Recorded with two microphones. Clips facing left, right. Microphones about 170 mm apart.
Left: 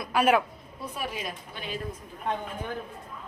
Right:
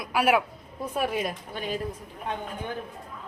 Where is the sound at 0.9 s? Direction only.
50° right (ahead or behind).